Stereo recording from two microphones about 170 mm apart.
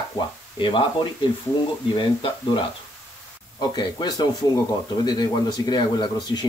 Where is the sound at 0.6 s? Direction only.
30° left (ahead or behind).